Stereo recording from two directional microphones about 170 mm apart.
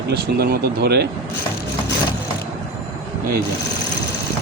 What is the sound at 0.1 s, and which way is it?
Speech, 65° right (ahead or behind).